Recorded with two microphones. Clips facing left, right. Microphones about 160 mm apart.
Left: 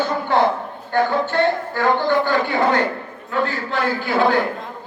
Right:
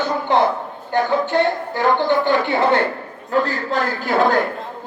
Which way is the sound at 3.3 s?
40° right (ahead or behind).